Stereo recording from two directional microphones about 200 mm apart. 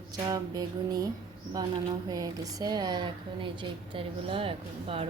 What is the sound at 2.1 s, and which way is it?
A woman's voice, 20° right (ahead or behind).